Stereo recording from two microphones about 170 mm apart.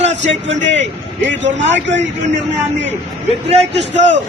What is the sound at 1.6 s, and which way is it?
Speech, 90° right.